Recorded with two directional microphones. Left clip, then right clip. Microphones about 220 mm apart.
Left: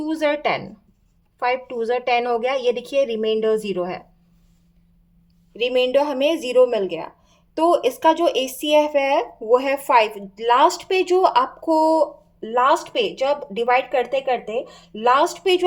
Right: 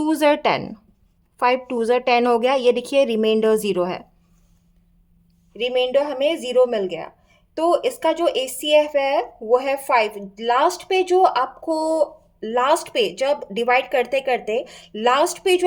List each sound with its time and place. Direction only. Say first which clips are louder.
0.0 s a woman's voice: right 3 dB; 25° right (ahead or behind)
5.5 s a woman's voice: left 1 dB; 5° left (ahead or behind)
12.4 s speech: left 1 dB; 15° right (ahead or behind)